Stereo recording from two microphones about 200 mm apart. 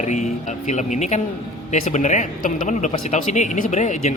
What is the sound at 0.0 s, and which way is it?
Speech, 35° left (ahead or behind).